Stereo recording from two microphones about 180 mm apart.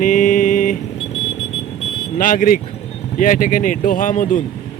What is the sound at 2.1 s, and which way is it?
Speech, 50° left (ahead or behind).